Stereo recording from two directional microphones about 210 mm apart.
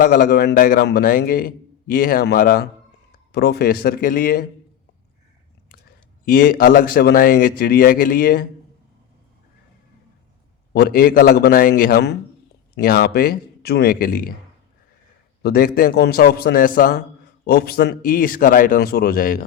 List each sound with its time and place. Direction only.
0.0 s a man's voice: 45° left (ahead or behind)
5.6 s speech: 45° left (ahead or behind)
10.8 s a man's voice: 45° left (ahead or behind)
15.4 s a man's voice: 45° left (ahead or behind)